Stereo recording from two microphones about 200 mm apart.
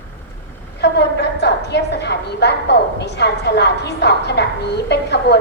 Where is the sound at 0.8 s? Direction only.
55° left (ahead or behind).